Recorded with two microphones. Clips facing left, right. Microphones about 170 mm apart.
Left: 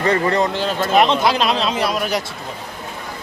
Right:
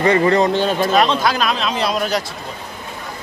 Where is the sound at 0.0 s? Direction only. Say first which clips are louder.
Right 3 dB; 15° right (ahead or behind).